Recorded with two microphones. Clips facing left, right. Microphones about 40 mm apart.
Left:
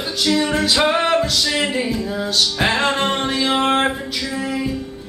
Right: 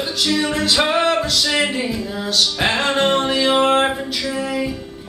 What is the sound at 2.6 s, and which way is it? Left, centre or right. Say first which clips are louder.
Music: even; centre.